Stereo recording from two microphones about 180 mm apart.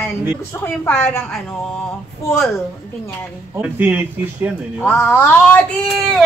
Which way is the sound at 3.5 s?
10° right (ahead or behind).